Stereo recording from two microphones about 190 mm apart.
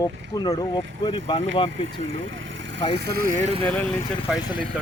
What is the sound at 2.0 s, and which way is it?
Vehicle, 90° right.